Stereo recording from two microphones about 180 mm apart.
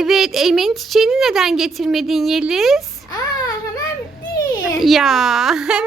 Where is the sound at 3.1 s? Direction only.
20° left (ahead or behind).